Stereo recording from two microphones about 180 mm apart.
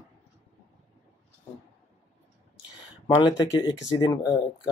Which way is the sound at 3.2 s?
25° left (ahead or behind).